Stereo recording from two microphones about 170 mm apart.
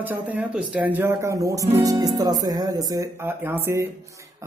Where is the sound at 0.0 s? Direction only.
10° right (ahead or behind).